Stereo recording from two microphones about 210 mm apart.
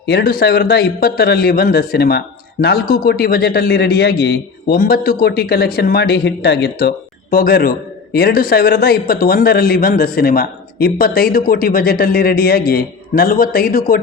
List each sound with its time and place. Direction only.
0.0 s a man's voice: 50° left (ahead or behind)